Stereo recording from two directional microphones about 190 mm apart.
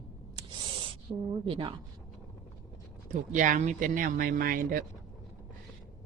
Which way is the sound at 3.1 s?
40° right (ahead or behind).